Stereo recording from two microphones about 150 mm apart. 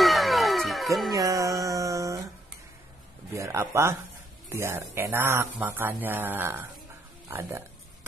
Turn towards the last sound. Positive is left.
turn(degrees=-15)  # may be behind; listen again after turning